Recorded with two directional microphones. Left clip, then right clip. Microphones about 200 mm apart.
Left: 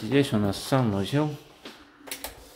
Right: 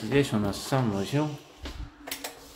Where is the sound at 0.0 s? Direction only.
20° left (ahead or behind).